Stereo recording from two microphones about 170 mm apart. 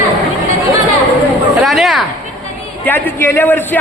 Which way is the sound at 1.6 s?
Centre (ahead or behind).